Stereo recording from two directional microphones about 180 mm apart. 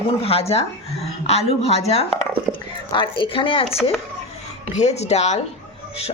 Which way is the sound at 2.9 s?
30° left (ahead or behind).